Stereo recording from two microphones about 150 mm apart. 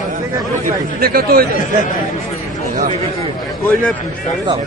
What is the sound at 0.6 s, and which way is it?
Speech, 80° right.